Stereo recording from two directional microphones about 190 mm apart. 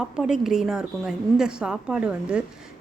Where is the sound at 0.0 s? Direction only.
Centre (ahead or behind).